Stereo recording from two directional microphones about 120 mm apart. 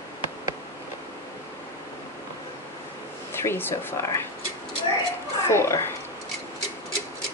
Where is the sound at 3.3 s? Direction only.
20° left (ahead or behind).